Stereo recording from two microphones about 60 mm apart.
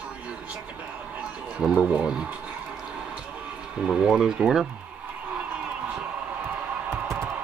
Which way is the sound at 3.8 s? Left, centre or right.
Centre.